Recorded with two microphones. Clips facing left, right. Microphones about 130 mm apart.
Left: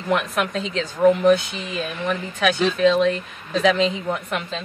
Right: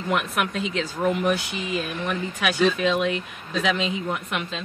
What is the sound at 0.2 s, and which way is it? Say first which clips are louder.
A woman's voice: left 2 dB; 5° right (ahead or behind).